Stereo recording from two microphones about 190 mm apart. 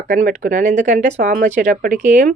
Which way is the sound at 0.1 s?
45° right (ahead or behind).